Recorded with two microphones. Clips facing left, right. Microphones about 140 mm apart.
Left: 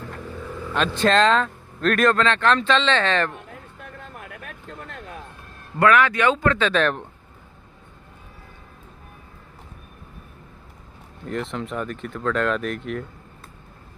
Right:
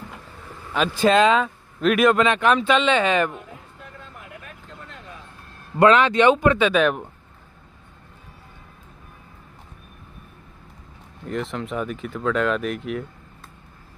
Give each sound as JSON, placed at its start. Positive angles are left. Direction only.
{"t": 0.7, "sound": "speech", "side_deg": -5}
{"t": 4.2, "sound": "vehicle", "side_deg": 65}
{"t": 5.8, "sound": "speech", "side_deg": -20}
{"t": 11.2, "sound": "speech", "side_deg": 0}